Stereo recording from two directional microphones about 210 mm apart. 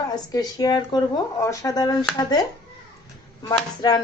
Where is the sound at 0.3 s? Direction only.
20° left (ahead or behind).